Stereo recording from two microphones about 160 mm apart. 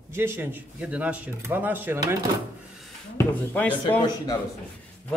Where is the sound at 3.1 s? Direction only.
10° left (ahead or behind).